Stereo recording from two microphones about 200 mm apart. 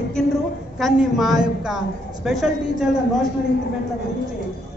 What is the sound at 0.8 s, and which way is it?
A woman's voice, centre (ahead or behind).